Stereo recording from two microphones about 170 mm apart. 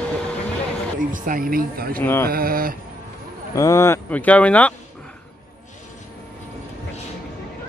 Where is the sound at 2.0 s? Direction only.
15° left (ahead or behind).